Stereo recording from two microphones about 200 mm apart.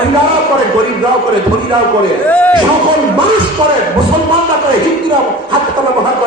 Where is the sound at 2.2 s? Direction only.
10° left (ahead or behind).